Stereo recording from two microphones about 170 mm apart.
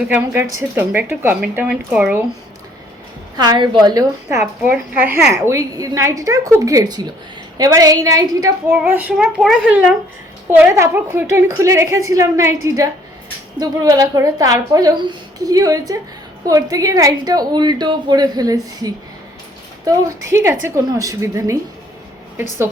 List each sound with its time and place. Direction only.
0.1 s a woman's voice: 15° right (ahead or behind)
3.3 s a woman's voice: 25° right (ahead or behind)